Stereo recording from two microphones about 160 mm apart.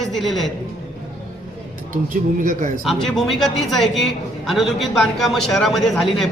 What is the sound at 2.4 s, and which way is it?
Speech, 50° right (ahead or behind).